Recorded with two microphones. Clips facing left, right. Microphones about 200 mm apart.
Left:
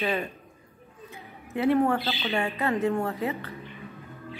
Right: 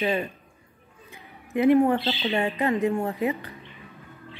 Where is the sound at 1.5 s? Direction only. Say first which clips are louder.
Right 4 dB; 15° right (ahead or behind).